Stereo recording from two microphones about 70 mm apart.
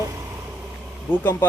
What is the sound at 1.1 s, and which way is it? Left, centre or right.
Speech, left.